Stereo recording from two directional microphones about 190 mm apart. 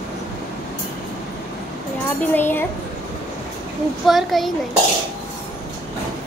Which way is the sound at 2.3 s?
10° left (ahead or behind).